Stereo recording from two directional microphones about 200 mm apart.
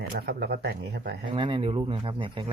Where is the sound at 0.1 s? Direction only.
50° right (ahead or behind).